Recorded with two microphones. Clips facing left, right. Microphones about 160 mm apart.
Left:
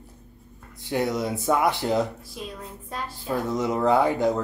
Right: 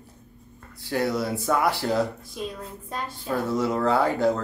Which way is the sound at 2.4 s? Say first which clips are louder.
Right 4 dB; centre (ahead or behind).